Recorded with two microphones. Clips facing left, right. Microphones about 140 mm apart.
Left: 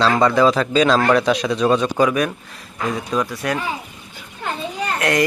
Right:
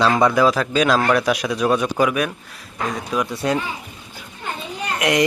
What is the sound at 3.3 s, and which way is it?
Speech, 25° right (ahead or behind).